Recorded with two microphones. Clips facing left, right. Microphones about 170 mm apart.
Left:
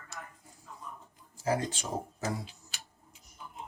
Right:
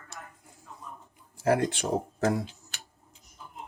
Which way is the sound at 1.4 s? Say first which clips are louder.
Right 6 dB; 65° right (ahead or behind).